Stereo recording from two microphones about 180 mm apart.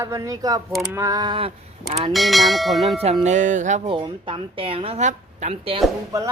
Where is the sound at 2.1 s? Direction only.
Centre (ahead or behind).